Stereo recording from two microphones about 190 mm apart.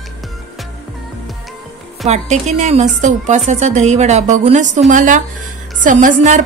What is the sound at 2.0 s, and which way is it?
A woman's voice, 40° right (ahead or behind).